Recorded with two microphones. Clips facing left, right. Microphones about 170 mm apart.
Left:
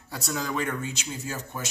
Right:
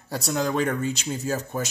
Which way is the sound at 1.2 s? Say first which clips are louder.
Right 9 dB; 40° right (ahead or behind).